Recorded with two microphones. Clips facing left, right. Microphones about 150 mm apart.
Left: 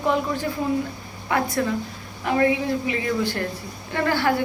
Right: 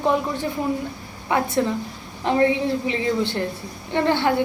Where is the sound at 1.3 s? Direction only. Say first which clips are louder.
Right 2 dB; 20° right (ahead or behind).